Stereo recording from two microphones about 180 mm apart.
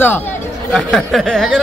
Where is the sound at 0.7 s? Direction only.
Centre (ahead or behind).